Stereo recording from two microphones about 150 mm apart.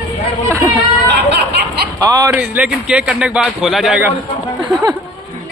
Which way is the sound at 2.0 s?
25° right (ahead or behind).